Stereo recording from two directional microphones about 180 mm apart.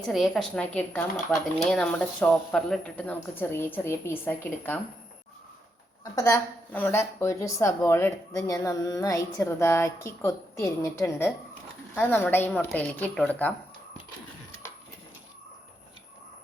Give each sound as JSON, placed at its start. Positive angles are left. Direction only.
{"t": 0.0, "sound": "a woman's voice", "side_deg": 0}
{"t": 6.1, "sound": "a woman's voice", "side_deg": 15}